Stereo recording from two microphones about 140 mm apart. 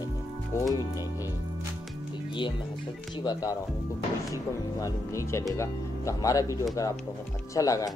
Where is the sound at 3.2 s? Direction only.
25° left (ahead or behind).